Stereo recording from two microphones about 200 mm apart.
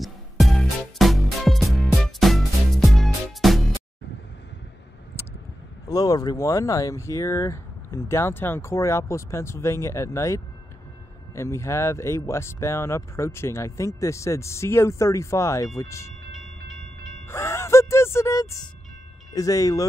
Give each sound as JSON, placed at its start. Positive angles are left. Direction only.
{"t": 0.0, "sound": "music", "side_deg": 0}
{"t": 5.9, "sound": "speech", "side_deg": 20}
{"t": 16.3, "sound": "train", "side_deg": 0}
{"t": 17.3, "sound": "music", "side_deg": 15}
{"t": 19.3, "sound": "speech", "side_deg": 15}